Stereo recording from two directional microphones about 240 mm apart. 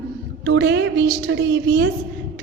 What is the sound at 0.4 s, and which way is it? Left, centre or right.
A woman's voice, right.